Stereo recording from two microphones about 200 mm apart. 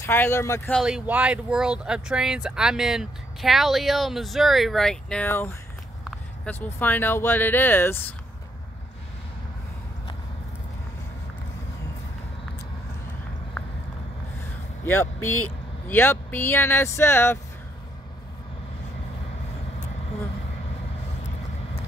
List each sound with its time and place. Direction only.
0.0 s speech: 10° left (ahead or behind)
0.7 s speech: 5° right (ahead or behind)
14.9 s speech: 10° left (ahead or behind)
15.2 s speech: 90° left
15.9 s speech: 10° left (ahead or behind)